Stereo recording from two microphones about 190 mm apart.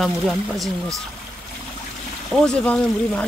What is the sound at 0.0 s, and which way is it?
Speech, centre (ahead or behind).